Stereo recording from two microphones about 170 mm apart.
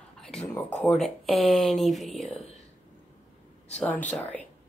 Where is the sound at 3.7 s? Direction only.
10° left (ahead or behind).